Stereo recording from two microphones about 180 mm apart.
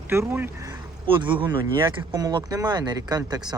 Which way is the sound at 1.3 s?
10° right (ahead or behind).